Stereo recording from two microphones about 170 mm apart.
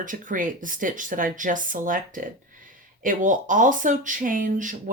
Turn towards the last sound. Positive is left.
turn(degrees=-50)  # may be behind; listen again after turning